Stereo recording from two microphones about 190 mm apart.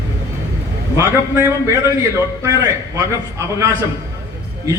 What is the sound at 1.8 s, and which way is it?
A man's voice, 15° right (ahead or behind).